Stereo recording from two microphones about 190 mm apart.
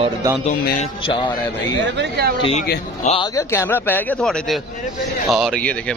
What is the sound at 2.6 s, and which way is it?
Speech, 55° left (ahead or behind).